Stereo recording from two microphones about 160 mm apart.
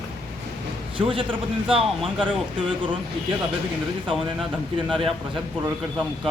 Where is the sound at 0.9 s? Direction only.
35° right (ahead or behind).